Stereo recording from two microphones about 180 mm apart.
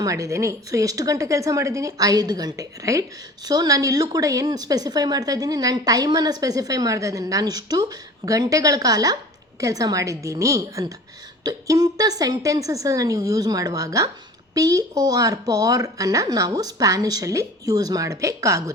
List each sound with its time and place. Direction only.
0.0 s a woman's voice: 15° right (ahead or behind)